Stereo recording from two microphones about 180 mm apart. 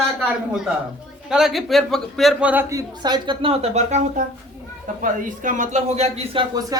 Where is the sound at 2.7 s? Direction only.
20° right (ahead or behind).